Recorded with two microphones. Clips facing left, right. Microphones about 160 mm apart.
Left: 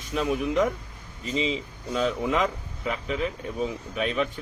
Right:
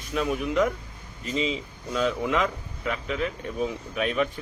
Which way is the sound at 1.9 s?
Centre (ahead or behind).